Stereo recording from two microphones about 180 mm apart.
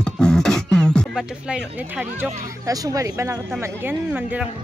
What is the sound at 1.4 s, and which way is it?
Speech, 5° right (ahead or behind).